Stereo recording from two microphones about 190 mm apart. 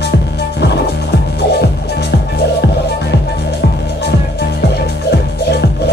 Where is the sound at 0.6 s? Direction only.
60° left (ahead or behind).